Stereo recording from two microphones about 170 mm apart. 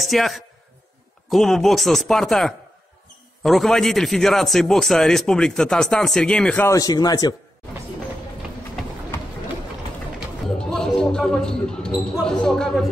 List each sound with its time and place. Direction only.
0.0 s a man's voice: centre (ahead or behind)
6.7 s speech: 20° left (ahead or behind)
10.2 s speech: 5° left (ahead or behind)